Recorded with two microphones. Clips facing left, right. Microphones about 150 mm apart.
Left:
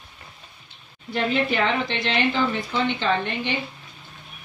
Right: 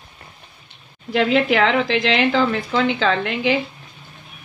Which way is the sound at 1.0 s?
90° right.